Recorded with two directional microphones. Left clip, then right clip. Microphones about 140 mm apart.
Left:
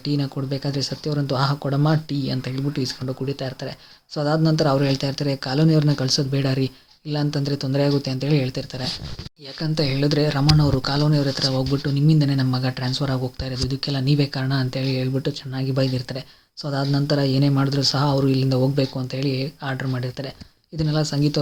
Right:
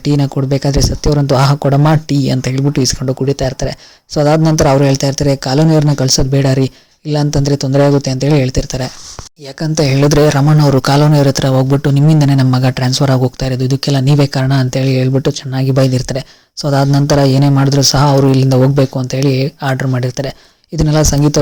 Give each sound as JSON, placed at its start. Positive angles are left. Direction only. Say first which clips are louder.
{"t": 0.0, "sound": "speech", "louder": "right 11 dB", "side_deg": -50}